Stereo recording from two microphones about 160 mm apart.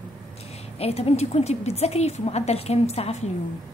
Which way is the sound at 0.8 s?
40° left (ahead or behind).